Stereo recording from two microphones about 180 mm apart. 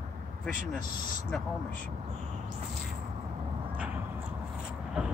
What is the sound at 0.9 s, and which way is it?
Speech, 50° left (ahead or behind).